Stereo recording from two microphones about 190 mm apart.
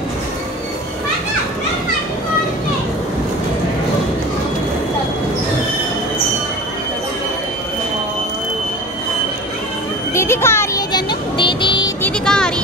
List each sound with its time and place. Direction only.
10.1 s music: 15° left (ahead or behind)
12.0 s music: 5° left (ahead or behind)